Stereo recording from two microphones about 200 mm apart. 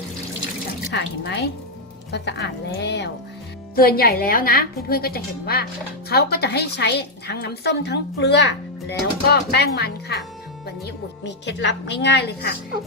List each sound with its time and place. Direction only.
0.9 s a woman's voice: 55° left (ahead or behind)